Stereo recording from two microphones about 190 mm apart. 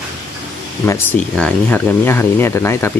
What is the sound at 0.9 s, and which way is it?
Speech, 10° left (ahead or behind).